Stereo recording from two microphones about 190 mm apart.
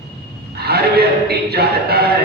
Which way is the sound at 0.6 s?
55° right (ahead or behind).